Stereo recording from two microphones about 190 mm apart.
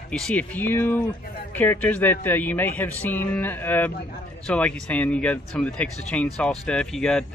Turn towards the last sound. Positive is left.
turn(degrees=5)  # may be behind; listen again after turning